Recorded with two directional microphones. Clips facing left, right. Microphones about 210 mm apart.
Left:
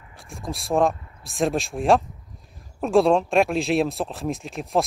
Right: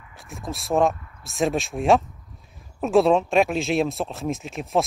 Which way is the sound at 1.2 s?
Centre (ahead or behind).